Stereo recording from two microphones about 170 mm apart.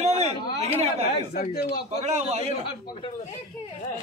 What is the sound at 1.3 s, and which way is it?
Speech, 65° left (ahead or behind).